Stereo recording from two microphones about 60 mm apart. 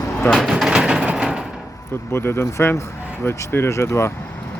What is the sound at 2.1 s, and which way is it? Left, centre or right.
Speech, left.